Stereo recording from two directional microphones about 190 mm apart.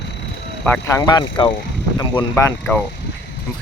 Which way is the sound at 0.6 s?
10° left (ahead or behind).